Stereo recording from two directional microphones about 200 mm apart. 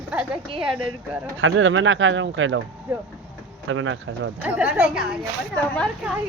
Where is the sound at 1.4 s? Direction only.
80° right.